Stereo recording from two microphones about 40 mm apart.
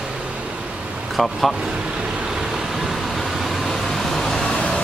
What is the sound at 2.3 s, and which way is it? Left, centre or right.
Vehicle, centre.